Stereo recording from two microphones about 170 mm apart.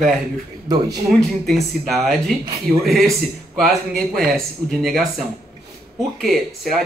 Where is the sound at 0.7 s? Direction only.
25° right (ahead or behind).